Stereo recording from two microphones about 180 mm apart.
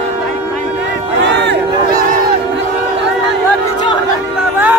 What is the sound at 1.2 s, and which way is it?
Crowd, 75° right (ahead or behind).